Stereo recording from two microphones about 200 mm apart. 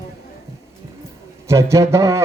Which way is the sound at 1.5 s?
15° right (ahead or behind).